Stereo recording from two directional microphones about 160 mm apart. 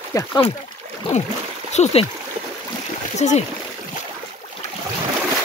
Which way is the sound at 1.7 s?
40° left (ahead or behind).